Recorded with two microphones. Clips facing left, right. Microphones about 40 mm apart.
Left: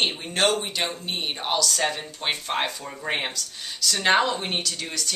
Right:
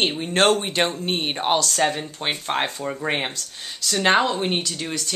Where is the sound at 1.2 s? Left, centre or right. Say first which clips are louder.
Right 3 dB; right.